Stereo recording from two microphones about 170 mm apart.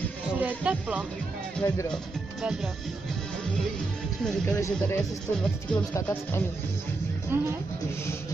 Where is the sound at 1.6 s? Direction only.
10° left (ahead or behind).